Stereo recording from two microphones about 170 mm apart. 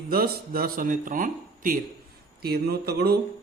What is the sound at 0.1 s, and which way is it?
Speech, 60° right (ahead or behind).